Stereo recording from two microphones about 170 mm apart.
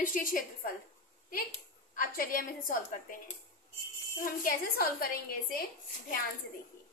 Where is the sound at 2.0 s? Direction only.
55° left (ahead or behind).